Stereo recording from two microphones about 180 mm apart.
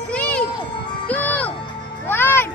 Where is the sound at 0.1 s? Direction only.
5° left (ahead or behind).